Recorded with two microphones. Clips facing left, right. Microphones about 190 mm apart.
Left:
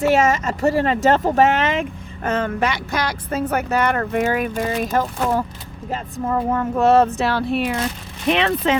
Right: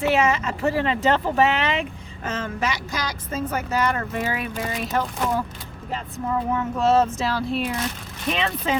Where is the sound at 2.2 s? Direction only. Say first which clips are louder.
Left 6 dB; 60° left (ahead or behind).